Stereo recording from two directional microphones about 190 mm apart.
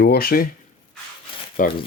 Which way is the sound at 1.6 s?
45° left (ahead or behind).